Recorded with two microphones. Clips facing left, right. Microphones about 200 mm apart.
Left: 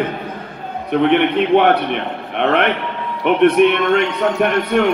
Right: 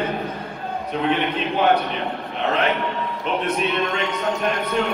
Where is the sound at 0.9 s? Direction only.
65° left (ahead or behind).